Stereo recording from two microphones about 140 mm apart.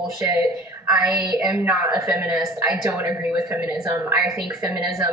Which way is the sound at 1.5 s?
15° right (ahead or behind).